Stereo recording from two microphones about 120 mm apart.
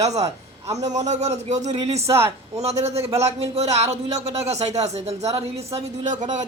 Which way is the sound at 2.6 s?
65° right (ahead or behind).